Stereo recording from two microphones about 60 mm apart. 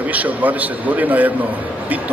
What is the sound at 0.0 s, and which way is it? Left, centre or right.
A man's voice, right.